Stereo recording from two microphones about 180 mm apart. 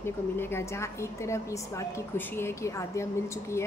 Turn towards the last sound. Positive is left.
turn(degrees=15)  # may be behind; listen again after turning